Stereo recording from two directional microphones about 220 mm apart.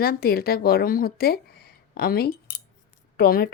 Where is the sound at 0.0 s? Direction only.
45° left (ahead or behind).